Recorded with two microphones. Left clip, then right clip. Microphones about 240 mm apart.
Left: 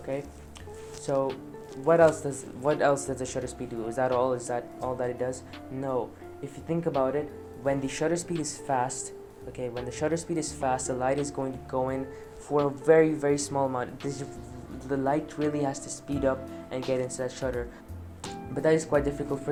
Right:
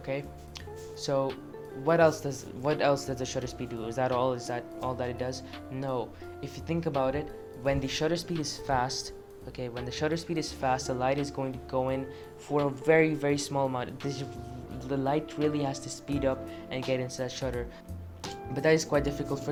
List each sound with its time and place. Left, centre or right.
0.1 s speech: right